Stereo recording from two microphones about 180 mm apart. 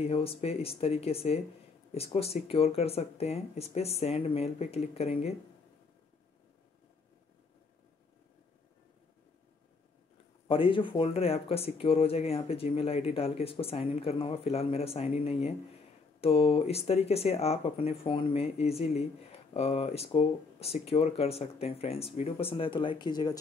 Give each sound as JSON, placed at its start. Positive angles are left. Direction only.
{"t": 0.0, "sound": "speech", "side_deg": 30}
{"t": 10.5, "sound": "speech", "side_deg": 30}